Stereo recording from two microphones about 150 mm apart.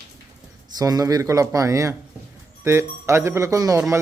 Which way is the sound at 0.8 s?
25° right (ahead or behind).